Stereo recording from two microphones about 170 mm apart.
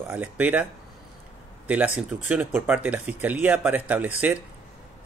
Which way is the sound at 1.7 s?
10° right (ahead or behind).